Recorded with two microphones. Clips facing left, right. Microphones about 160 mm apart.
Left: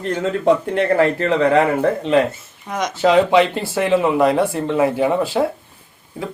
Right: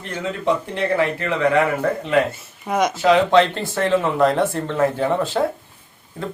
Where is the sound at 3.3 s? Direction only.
10° left (ahead or behind).